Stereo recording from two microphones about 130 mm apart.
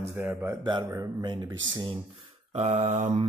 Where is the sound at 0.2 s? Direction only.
15° right (ahead or behind).